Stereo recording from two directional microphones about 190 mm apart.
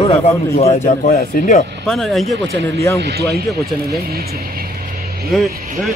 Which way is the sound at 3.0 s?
55° right (ahead or behind).